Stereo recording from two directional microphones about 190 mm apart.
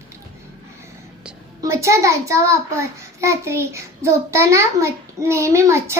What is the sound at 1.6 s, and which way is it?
A child's voice, 15° right (ahead or behind).